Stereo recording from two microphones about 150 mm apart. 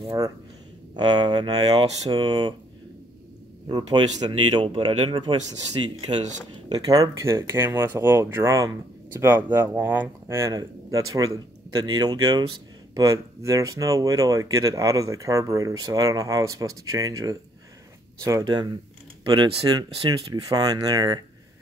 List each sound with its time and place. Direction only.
0.9 s speech: 30° right (ahead or behind)
3.6 s speech: 30° right (ahead or behind)
6.0 s speech: 50° right (ahead or behind)
6.5 s speech: 25° right (ahead or behind)